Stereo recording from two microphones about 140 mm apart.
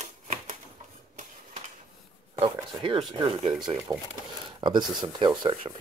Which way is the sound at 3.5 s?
30° right (ahead or behind).